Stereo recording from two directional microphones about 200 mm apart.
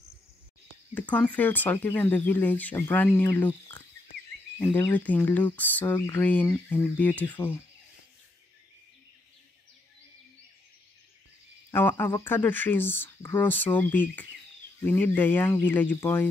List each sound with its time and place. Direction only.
0.9 s speech: 10° left (ahead or behind)
4.6 s speech: 10° left (ahead or behind)
11.7 s speech: 10° left (ahead or behind)